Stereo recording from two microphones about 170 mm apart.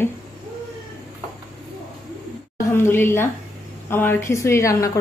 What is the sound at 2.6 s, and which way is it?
A woman's voice, 15° left (ahead or behind).